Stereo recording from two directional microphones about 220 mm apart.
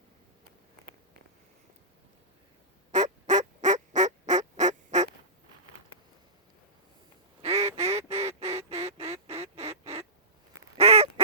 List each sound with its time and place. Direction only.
2.9 s fowl: 35° right (ahead or behind)
7.4 s duck: 30° right (ahead or behind)
7.8 s goose: 30° right (ahead or behind)
9.4 s duck: 30° right (ahead or behind)
10.8 s goose: 30° right (ahead or behind)